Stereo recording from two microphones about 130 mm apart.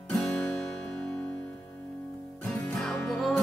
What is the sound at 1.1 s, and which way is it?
Music, 20° left (ahead or behind).